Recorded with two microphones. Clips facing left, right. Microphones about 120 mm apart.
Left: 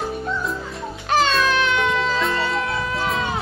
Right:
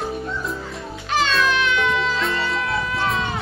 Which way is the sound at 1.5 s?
35° left (ahead or behind).